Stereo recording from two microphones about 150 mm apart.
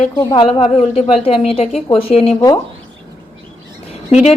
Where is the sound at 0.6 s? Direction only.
45° left (ahead or behind).